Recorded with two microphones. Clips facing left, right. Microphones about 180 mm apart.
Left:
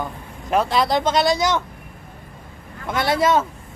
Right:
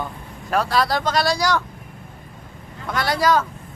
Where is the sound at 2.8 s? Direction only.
25° left (ahead or behind).